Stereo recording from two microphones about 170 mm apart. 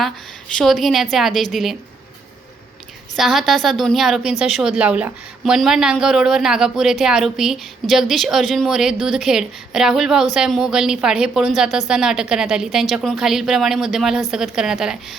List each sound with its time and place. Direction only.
0.5 s a woman's voice: centre (ahead or behind)
3.2 s a woman's voice: centre (ahead or behind)